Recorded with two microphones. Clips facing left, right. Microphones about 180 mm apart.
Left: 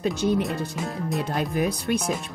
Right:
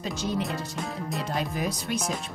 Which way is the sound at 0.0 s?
60° left (ahead or behind).